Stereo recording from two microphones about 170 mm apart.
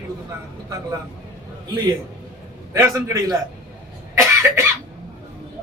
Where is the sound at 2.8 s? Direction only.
20° right (ahead or behind).